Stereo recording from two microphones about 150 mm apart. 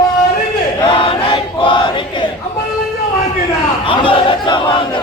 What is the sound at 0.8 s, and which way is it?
Chant, 35° left (ahead or behind).